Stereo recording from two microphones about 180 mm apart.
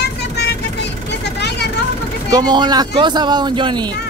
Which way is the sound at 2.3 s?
25° right (ahead or behind).